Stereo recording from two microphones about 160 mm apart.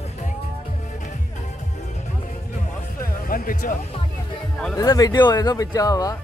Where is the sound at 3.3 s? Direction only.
60° left (ahead or behind).